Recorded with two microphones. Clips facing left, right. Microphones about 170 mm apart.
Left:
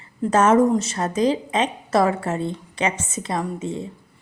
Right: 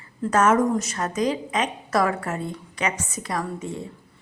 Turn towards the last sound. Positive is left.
turn(degrees=20)  # may be behind; listen again after turning